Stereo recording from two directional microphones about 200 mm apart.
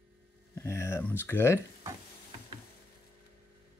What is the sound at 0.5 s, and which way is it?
Speech, 15° left (ahead or behind).